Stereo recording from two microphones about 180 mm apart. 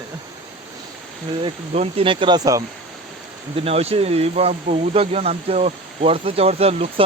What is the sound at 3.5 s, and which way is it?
Speech, 35° right (ahead or behind).